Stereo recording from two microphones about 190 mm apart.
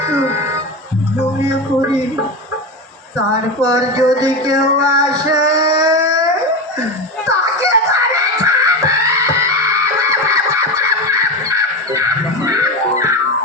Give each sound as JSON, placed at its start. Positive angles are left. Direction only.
{"t": 0.0, "sound": "music", "side_deg": -15}
{"t": 3.6, "sound": "music", "side_deg": -20}
{"t": 7.3, "sound": "music", "side_deg": -15}
{"t": 11.4, "sound": "crow", "side_deg": -15}
{"t": 12.5, "sound": "music", "side_deg": -15}